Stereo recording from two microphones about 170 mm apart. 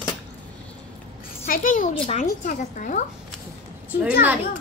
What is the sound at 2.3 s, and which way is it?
Speech, 50° left (ahead or behind).